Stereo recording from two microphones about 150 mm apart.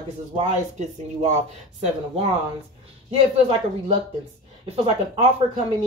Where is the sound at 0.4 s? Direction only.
50° right (ahead or behind).